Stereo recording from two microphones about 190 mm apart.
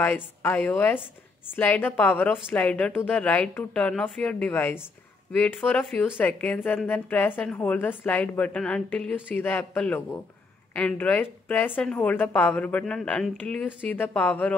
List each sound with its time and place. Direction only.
0.0 s speech: 10° left (ahead or behind)